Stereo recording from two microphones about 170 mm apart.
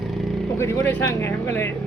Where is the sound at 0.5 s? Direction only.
15° left (ahead or behind).